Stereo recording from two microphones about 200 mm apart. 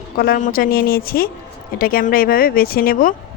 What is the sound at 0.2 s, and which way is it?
Speech, 45° left (ahead or behind).